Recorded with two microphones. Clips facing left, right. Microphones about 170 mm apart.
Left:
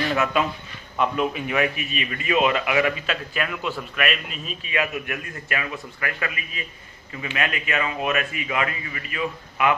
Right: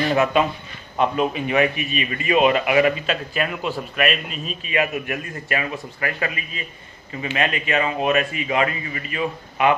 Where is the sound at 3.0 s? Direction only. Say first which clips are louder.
Right 3 dB; 35° right (ahead or behind).